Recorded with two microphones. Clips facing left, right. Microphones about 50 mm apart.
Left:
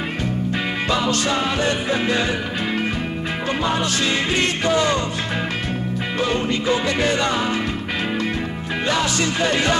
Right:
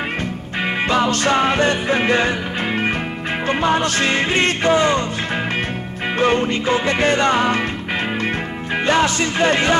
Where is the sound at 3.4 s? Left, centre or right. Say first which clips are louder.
Right 4 dB; right.